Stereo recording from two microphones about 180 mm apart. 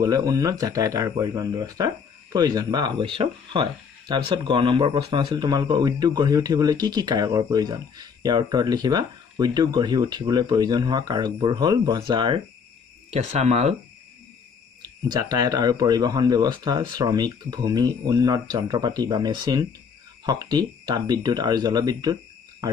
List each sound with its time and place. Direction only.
0.0 s speech: 20° right (ahead or behind)
13.1 s speech: 40° right (ahead or behind)
15.0 s speech: 20° right (ahead or behind)